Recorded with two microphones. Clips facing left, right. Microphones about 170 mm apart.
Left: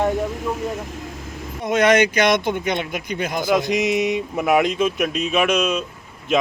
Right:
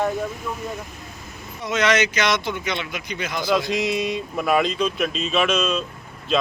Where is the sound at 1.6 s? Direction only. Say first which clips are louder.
Left 5 dB; 50° left (ahead or behind).